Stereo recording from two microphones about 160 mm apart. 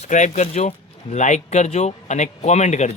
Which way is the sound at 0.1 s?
50° left (ahead or behind).